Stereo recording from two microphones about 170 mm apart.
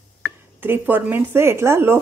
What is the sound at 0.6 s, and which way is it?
Speech, 10° right (ahead or behind).